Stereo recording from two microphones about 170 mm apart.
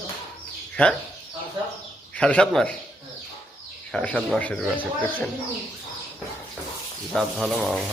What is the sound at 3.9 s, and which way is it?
Speech, 5° left (ahead or behind).